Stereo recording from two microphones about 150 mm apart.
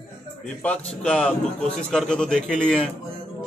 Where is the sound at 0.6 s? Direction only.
5° left (ahead or behind).